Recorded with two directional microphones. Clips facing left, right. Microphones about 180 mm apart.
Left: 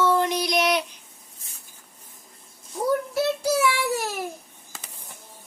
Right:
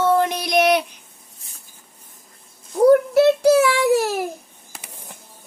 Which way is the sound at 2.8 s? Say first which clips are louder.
Right 11 dB; 65° right (ahead or behind).